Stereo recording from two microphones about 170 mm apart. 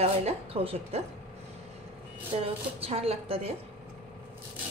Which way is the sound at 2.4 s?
35° right (ahead or behind).